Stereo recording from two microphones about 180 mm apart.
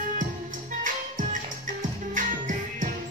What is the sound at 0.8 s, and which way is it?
Music, 45° right (ahead or behind).